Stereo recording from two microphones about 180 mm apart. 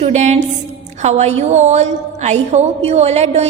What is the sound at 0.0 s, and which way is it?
A woman's voice, 40° right (ahead or behind).